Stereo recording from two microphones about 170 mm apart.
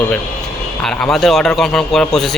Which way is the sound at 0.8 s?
5° left (ahead or behind).